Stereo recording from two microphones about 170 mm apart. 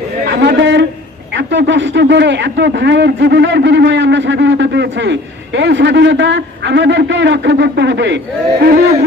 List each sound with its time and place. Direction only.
0.3 s a man's voice: 90° right